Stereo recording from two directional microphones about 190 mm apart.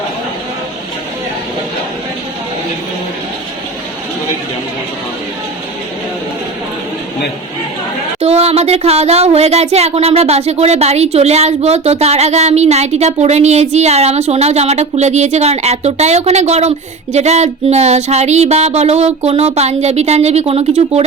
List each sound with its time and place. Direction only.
8.2 s speech: 35° right (ahead or behind)